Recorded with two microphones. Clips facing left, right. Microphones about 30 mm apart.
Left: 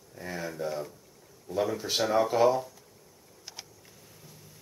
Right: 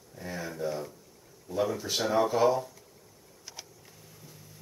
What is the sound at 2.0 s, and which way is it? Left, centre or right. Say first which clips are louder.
Speech: left 1 dB; centre.